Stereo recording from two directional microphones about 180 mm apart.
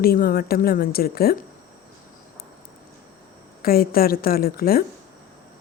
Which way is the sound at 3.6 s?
55° left (ahead or behind).